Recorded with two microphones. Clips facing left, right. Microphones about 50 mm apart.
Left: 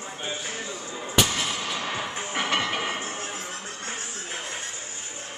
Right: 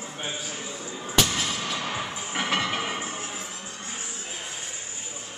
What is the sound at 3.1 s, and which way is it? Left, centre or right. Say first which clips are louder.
Music: left 1 dB; left.